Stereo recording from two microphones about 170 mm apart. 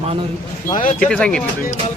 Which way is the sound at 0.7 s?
50° left (ahead or behind).